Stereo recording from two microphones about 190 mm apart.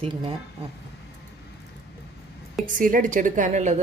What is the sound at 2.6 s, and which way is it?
A woman's voice, 45° right (ahead or behind).